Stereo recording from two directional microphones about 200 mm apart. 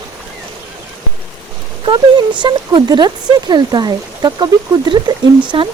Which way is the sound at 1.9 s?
25° right (ahead or behind).